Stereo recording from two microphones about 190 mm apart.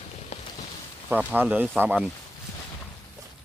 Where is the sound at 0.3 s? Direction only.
35° left (ahead or behind).